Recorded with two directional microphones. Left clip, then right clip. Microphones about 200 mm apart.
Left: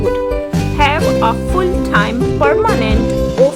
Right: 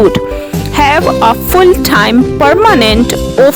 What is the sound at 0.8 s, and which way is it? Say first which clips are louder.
Music: right 5 dB; 50° right (ahead or behind).